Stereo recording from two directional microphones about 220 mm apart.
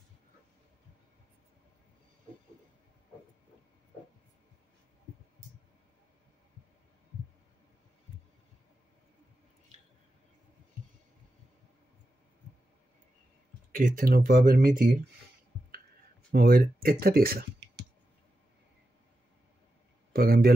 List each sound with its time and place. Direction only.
13.7 s speech: 40° right (ahead or behind)
16.3 s speech: 45° right (ahead or behind)
20.1 s speech: 45° right (ahead or behind)